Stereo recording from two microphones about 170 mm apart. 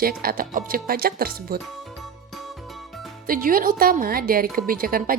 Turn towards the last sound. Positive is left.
turn(degrees=-60)  # may be behind; listen again after turning